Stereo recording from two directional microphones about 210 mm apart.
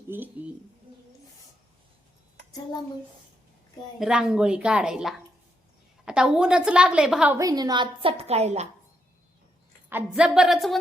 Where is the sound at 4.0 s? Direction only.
5° right (ahead or behind).